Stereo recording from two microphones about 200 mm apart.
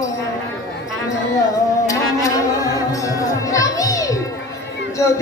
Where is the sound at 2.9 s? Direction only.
15° left (ahead or behind).